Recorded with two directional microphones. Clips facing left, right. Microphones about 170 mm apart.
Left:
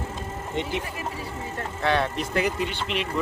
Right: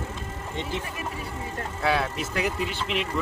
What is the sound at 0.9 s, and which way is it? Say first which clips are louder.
Speech: left 1 dB; 30° left (ahead or behind).